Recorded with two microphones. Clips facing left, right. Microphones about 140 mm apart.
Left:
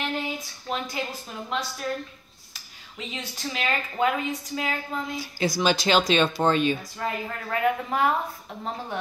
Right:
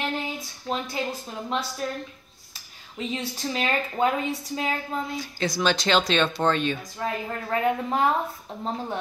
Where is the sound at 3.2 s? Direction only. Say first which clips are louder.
Right 1 dB; 35° right (ahead or behind).